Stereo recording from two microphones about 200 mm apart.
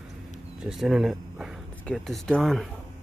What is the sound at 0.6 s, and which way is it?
Speech, 5° right (ahead or behind).